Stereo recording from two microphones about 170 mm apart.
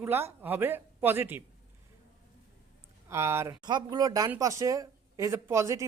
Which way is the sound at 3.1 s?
15° right (ahead or behind).